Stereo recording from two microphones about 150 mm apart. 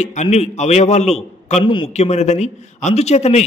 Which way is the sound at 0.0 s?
50° left (ahead or behind).